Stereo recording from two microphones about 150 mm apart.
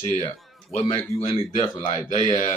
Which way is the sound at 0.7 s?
40° left (ahead or behind).